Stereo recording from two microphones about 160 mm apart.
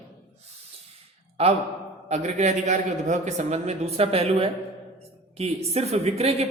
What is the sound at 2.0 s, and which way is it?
A man's voice, 45° right (ahead or behind).